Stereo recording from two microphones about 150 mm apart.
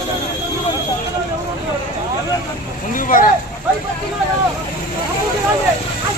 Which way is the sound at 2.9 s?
65° left (ahead or behind).